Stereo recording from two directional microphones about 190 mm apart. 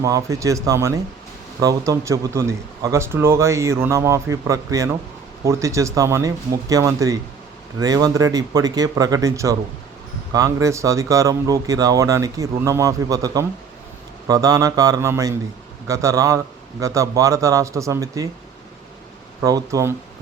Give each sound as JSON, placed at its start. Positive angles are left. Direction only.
{"t": 0.0, "sound": "speech", "side_deg": -15}
{"t": 19.4, "sound": "speech", "side_deg": -20}